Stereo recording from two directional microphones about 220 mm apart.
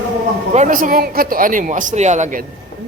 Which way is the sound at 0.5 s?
35° right (ahead or behind).